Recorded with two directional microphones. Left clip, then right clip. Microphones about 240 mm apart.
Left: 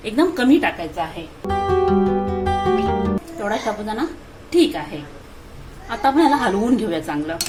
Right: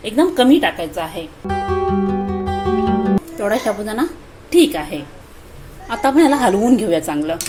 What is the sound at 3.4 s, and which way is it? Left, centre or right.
A woman's voice, right.